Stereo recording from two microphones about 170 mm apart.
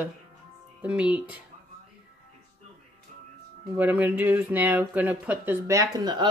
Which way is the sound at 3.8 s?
10° right (ahead or behind).